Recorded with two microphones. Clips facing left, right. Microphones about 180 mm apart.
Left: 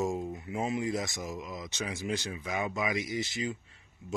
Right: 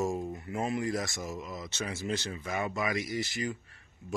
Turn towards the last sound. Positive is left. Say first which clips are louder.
# even
turn(degrees=20)  # may be behind; listen again after turning